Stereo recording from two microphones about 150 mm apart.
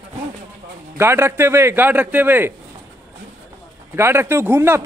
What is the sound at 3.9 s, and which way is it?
Speech, 15° right (ahead or behind).